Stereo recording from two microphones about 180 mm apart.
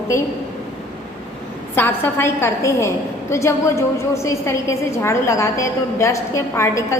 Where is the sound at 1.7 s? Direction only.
10° left (ahead or behind).